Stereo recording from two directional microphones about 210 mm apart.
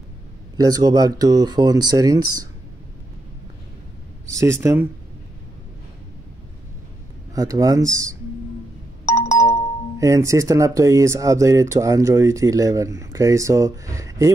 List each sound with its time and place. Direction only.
0.6 s speech: 15° right (ahead or behind)
4.3 s speech: 15° right (ahead or behind)
7.3 s speech: 15° right (ahead or behind)
9.0 s doorbell: 15° left (ahead or behind)
9.9 s speech: 15° right (ahead or behind)